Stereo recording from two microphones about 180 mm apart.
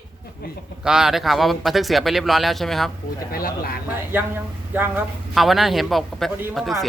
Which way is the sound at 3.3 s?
55° left (ahead or behind).